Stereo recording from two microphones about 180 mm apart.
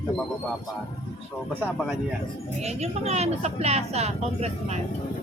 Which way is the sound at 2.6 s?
35° right (ahead or behind).